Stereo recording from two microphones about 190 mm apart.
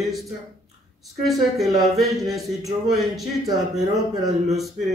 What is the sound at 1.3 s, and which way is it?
Speech, centre (ahead or behind).